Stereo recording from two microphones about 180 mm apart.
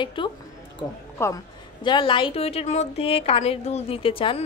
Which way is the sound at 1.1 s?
15° left (ahead or behind).